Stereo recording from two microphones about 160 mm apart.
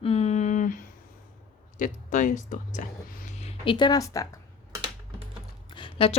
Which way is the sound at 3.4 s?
40° left (ahead or behind).